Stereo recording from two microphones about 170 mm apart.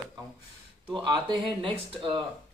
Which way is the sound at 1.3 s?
30° right (ahead or behind).